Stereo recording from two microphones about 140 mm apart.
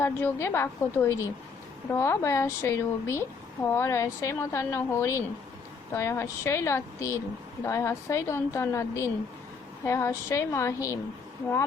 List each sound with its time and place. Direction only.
0.0 s a woman's voice: 15° left (ahead or behind)